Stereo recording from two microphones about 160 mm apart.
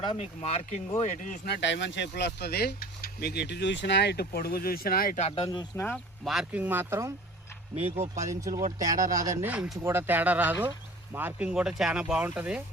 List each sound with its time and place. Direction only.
0.2 s speech: 40° left (ahead or behind)
1.5 s speech: 90° left; by 5.2 s 60° left (ahead or behind)
5.2 s speech: 35° left (ahead or behind)
5.8 s speech: 5° left (ahead or behind); by 7.1 s 15° right (ahead or behind)
7.8 s speech: 40° right (ahead or behind)
8.2 s speech: 20° right (ahead or behind)